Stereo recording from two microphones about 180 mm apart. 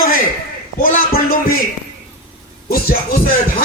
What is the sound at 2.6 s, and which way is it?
Speech, 55° left (ahead or behind).